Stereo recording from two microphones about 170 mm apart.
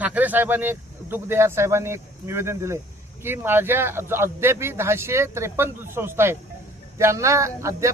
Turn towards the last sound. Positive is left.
turn(degrees=-20)  # may be behind; listen again after turning